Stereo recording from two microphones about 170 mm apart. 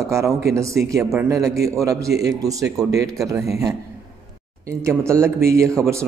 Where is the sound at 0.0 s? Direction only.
15° right (ahead or behind).